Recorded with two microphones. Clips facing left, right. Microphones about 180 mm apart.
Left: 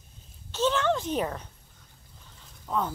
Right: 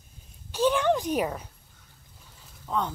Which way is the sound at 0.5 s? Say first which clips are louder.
Right 2 dB; 10° right (ahead or behind).